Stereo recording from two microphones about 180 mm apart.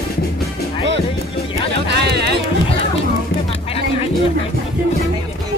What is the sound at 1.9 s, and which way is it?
Music, 65° right (ahead or behind).